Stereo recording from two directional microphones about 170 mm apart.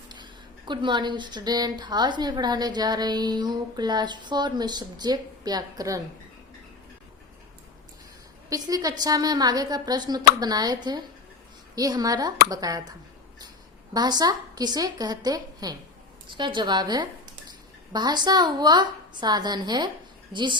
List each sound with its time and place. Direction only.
0.1 s speech: 25° right (ahead or behind)
8.4 s speech: 20° right (ahead or behind)